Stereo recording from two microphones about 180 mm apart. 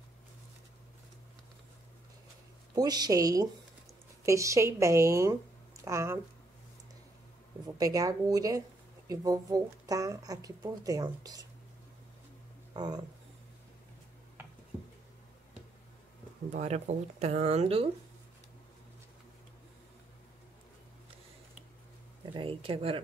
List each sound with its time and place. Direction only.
2.7 s a woman's voice: 20° right (ahead or behind)
7.6 s speech: 20° right (ahead or behind)
12.7 s speech: 20° right (ahead or behind)
16.5 s speech: 40° right (ahead or behind)
22.2 s speech: 30° right (ahead or behind)